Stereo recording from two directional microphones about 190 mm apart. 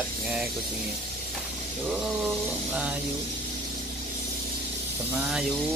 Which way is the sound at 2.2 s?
5° right (ahead or behind).